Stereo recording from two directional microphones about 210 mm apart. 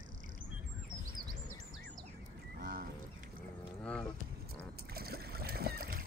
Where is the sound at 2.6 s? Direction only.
45° right (ahead or behind).